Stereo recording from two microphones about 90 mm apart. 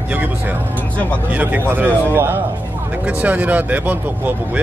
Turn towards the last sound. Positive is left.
turn(degrees=-20)  # may be behind; listen again after turning